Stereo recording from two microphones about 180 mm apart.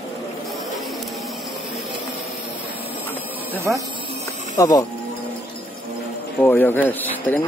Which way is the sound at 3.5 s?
15° right (ahead or behind).